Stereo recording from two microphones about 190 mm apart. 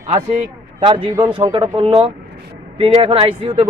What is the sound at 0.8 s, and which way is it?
Speech, 25° right (ahead or behind).